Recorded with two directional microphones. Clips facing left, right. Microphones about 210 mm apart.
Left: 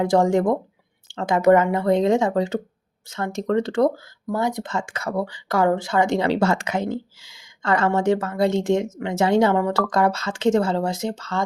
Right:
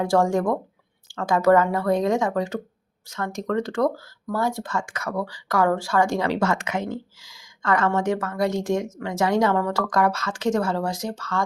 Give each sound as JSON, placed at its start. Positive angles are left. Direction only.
{"t": 0.0, "sound": "speech", "side_deg": 20}